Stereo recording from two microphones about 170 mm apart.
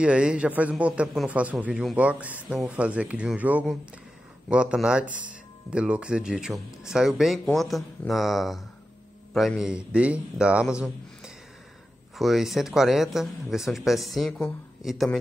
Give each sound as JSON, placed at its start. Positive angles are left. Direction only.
{"t": 0.0, "sound": "a man's voice", "side_deg": -5}
{"t": 5.0, "sound": "speech", "side_deg": -50}
{"t": 5.7, "sound": "speech", "side_deg": -5}